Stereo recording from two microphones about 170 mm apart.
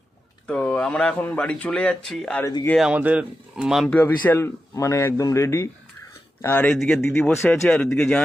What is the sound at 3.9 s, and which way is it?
A man's voice, 10° left (ahead or behind).